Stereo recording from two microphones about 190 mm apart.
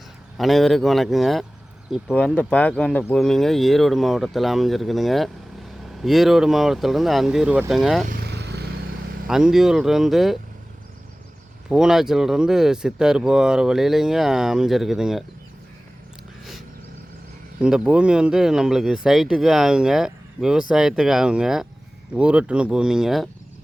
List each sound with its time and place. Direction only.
0.3 s speech: centre (ahead or behind)
8.0 s vehicle: 50° right (ahead or behind)
9.2 s speech: centre (ahead or behind)
11.7 s speech: 5° right (ahead or behind)
17.6 s speech: 5° right (ahead or behind)